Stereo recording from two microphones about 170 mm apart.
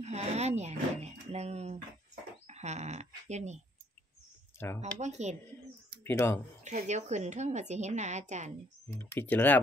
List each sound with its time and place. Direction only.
0.0 s speech: 40° right (ahead or behind)
4.6 s speech: 15° left (ahead or behind)
4.9 s speech: 40° right (ahead or behind)
6.0 s speech: 15° left (ahead or behind)
6.6 s a woman's voice: 45° right (ahead or behind)
9.1 s speech: 10° left (ahead or behind)